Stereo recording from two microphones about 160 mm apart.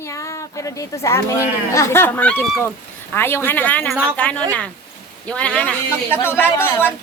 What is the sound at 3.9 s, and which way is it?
Speech, 10° right (ahead or behind).